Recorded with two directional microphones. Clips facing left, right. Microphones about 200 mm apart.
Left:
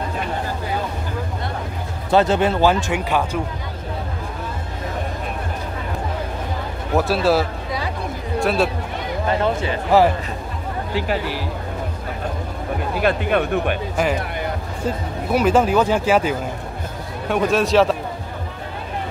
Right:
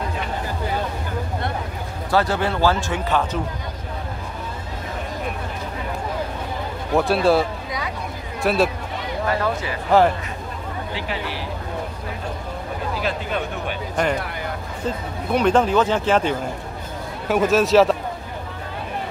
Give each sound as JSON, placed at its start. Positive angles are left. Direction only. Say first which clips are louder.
{"t": 2.0, "sound": "speech", "louder": "left 4 dB", "side_deg": 20}
{"t": 7.0, "sound": "a man's voice", "louder": "even", "side_deg": 0}
{"t": 9.3, "sound": "speech", "louder": "left 4 dB", "side_deg": 25}
{"t": 9.8, "sound": "a man's voice", "louder": "left 1 dB", "side_deg": 5}
{"t": 11.0, "sound": "speech", "louder": "left 8 dB", "side_deg": 45}
{"t": 13.0, "sound": "speech", "louder": "left 9 dB", "side_deg": 60}
{"t": 14.0, "sound": "speech", "louder": "even", "side_deg": 5}
{"t": 15.3, "sound": "speech", "louder": "left 1 dB", "side_deg": 5}
{"t": 17.3, "sound": "a man's voice", "louder": "right 1 dB", "side_deg": 0}